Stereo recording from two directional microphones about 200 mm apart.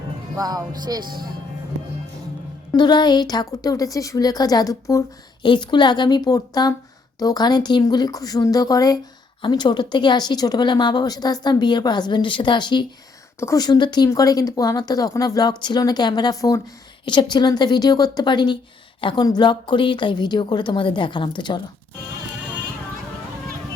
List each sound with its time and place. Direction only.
0.3 s music: 20° right (ahead or behind)
2.7 s speech: 20° left (ahead or behind)